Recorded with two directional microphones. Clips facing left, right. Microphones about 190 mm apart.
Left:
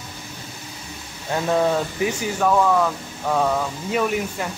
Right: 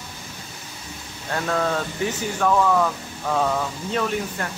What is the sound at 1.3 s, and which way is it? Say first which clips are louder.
Speech: left 4 dB; 15° left (ahead or behind).